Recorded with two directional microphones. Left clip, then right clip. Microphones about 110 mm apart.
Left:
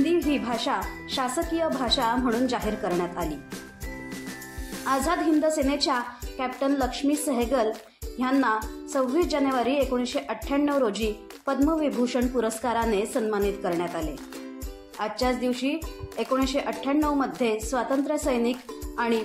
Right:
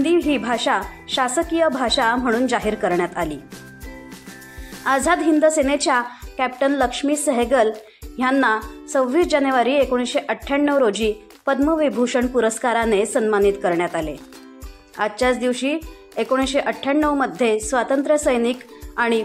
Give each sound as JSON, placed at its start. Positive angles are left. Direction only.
{"t": 0.0, "sound": "speech", "side_deg": -40}
{"t": 4.8, "sound": "speech", "side_deg": -50}
{"t": 15.0, "sound": "speech", "side_deg": -45}